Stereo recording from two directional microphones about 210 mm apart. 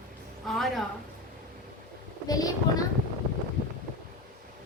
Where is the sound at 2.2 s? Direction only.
15° left (ahead or behind).